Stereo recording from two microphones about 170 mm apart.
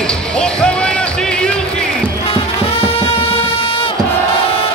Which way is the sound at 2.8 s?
30° left (ahead or behind).